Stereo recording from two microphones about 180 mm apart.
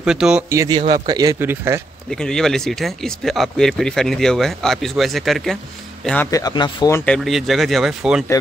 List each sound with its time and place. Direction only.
0.0 s speech: 5° right (ahead or behind)
0.5 s a man's voice: 15° right (ahead or behind)
2.0 s speech: 5° left (ahead or behind)
6.3 s speech: 25° left (ahead or behind)
7.1 s speech: centre (ahead or behind)